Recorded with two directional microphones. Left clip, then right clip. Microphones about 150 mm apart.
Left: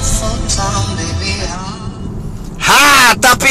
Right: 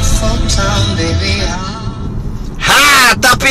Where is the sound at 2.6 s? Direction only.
25° left (ahead or behind).